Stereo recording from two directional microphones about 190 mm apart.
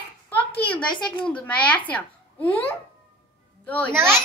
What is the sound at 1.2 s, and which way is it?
A woman's voice, 5° left (ahead or behind).